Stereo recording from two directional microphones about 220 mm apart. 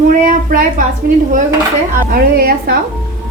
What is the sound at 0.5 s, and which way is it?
Speech, 35° right (ahead or behind).